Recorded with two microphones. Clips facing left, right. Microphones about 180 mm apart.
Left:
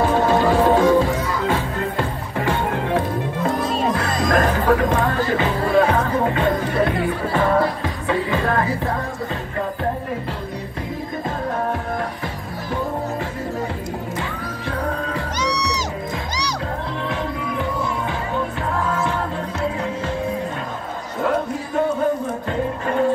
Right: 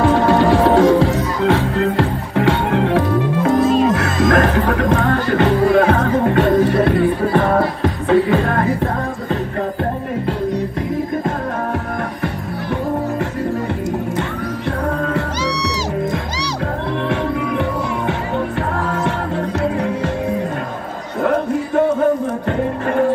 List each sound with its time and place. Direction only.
0.0 s music: 65° right (ahead or behind)
3.4 s music: 45° right (ahead or behind)
3.9 s music: 70° right (ahead or behind); by 8.6 s 55° right (ahead or behind)
17.1 s music: 65° right (ahead or behind)
19.6 s music: 60° right (ahead or behind)
21.2 s a sound: 55° right (ahead or behind)